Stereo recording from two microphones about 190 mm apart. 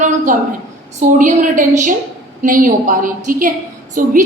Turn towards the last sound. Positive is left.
turn(degrees=-45)  # may be behind; listen again after turning